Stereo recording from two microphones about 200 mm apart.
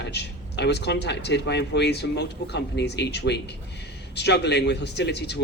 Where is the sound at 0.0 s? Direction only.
55° left (ahead or behind).